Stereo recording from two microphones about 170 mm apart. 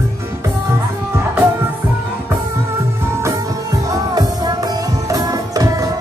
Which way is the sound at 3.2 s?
20° right (ahead or behind).